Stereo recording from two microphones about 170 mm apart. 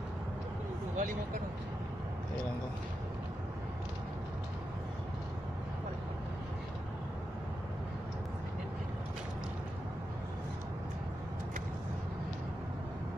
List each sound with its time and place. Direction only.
0.9 s speech: 50° right (ahead or behind)